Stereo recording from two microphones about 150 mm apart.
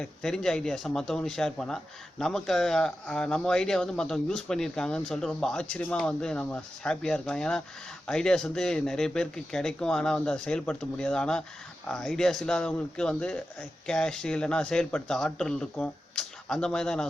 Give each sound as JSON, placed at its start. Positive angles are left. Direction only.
{"t": 0.0, "sound": "speech", "side_deg": 5}